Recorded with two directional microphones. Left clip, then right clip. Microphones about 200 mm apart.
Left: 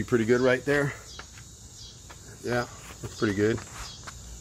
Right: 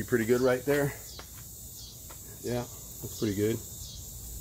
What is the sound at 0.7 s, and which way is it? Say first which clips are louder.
Speech: left 2 dB; 25° left (ahead or behind).